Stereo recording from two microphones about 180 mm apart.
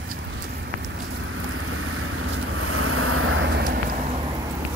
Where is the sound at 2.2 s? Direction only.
90° right.